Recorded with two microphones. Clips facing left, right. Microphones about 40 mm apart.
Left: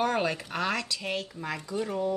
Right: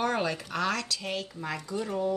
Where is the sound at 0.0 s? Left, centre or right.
Centre.